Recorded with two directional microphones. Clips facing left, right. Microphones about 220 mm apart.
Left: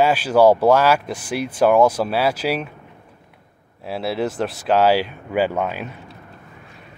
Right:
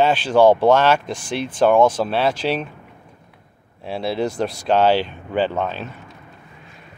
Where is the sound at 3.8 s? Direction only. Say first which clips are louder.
Right 1 dB; 5° left (ahead or behind).